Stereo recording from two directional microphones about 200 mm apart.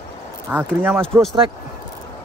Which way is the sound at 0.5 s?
10° right (ahead or behind).